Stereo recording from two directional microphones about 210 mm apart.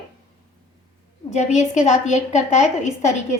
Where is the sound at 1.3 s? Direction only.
35° left (ahead or behind).